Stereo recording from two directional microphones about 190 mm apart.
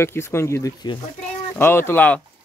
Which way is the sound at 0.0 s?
15° left (ahead or behind).